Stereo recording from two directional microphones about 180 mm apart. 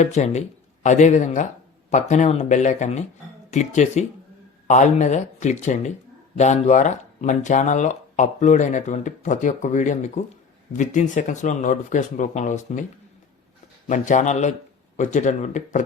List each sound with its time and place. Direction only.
0.0 s speech: 40° left (ahead or behind)
13.8 s speech: 40° left (ahead or behind)